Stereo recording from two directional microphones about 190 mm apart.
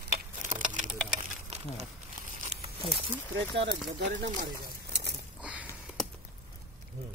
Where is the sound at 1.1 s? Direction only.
35° right (ahead or behind).